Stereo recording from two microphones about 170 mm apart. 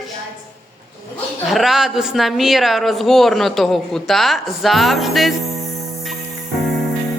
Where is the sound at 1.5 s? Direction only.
Centre (ahead or behind).